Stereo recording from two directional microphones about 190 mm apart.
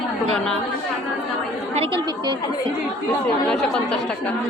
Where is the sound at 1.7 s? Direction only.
30° right (ahead or behind).